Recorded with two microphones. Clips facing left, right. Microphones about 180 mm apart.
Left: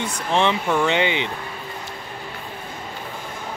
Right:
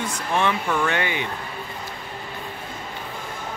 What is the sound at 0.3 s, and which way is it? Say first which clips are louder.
Speech: left 3 dB; 20° left (ahead or behind).